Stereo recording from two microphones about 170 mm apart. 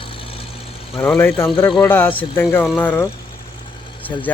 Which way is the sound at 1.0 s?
10° left (ahead or behind).